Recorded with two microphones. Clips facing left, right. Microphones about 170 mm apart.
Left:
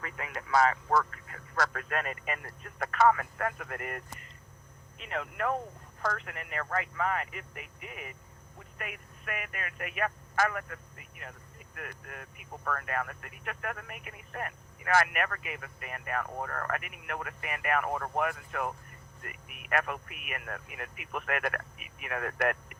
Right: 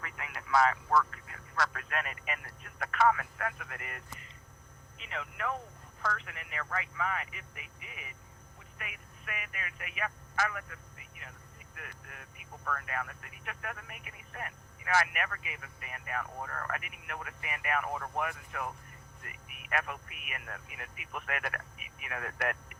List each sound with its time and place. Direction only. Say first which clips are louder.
0.0 s speech: left 5 dB; 35° left (ahead or behind); by 22.8 s 50° left (ahead or behind)